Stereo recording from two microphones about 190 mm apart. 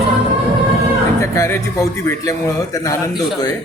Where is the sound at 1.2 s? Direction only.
15° left (ahead or behind).